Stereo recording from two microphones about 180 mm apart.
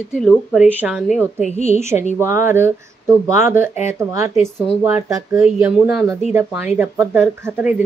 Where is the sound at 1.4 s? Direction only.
40° left (ahead or behind).